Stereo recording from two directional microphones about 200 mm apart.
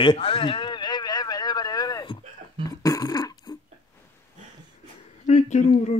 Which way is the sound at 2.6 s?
15° left (ahead or behind).